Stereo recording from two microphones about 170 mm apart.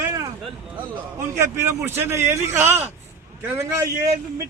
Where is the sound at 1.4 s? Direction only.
15° right (ahead or behind).